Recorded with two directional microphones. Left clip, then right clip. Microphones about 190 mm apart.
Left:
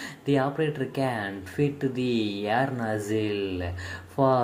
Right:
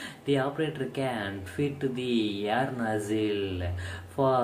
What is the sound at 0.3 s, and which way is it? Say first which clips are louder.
Speech: left 3 dB; 15° left (ahead or behind).